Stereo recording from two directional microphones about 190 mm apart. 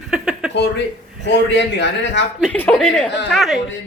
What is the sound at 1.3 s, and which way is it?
Speech, 65° left (ahead or behind).